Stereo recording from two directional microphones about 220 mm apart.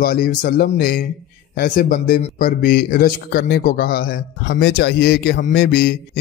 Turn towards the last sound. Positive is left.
turn(degrees=45)  # may be behind; listen again after turning